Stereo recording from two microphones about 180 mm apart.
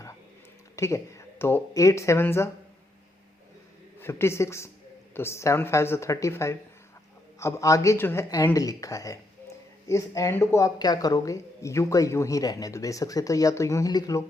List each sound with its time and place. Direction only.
0.8 s speech: 15° left (ahead or behind)
4.0 s speech: 15° left (ahead or behind)